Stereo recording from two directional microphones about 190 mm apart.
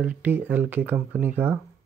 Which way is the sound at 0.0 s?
10° right (ahead or behind).